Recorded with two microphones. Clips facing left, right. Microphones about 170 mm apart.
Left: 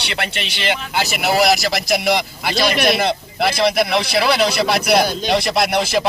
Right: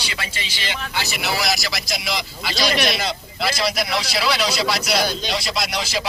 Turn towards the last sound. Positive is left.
turn(degrees=55)  # may be behind; listen again after turning